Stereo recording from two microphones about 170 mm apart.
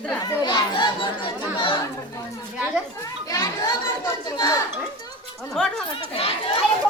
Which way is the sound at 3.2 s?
25° left (ahead or behind).